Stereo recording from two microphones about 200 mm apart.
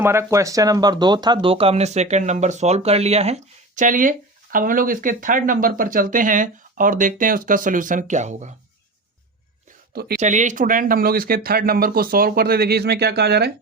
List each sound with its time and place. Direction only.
0.0 s speech: 15° right (ahead or behind); by 8.5 s 35° right (ahead or behind)
9.9 s speech: 50° right (ahead or behind)
10.2 s speech: 35° right (ahead or behind); by 13.5 s 55° right (ahead or behind)